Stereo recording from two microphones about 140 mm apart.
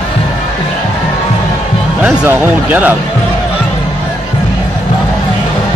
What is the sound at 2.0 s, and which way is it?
Speech, 10° right (ahead or behind).